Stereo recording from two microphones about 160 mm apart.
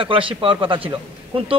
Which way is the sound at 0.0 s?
35° right (ahead or behind).